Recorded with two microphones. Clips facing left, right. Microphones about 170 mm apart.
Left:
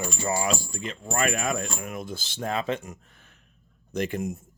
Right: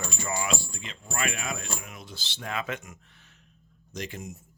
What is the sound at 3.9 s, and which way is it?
Speech, 55° left (ahead or behind).